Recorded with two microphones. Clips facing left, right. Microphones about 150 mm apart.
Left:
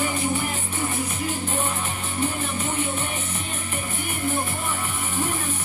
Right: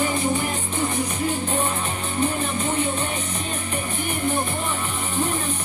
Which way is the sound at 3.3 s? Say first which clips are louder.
Right 3 dB; 15° right (ahead or behind).